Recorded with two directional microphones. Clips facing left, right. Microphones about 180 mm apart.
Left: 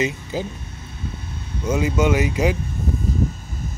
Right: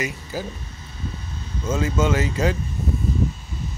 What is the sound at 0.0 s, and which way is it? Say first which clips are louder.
Speech: left 4 dB; 20° left (ahead or behind).